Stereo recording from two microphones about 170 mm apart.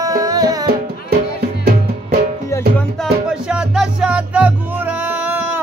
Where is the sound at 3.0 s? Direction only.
5° right (ahead or behind).